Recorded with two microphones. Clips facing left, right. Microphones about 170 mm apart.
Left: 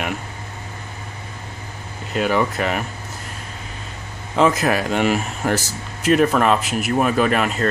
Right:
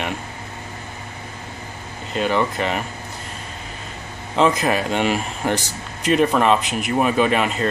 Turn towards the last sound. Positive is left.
turn(degrees=0)  # may be behind; listen again after turning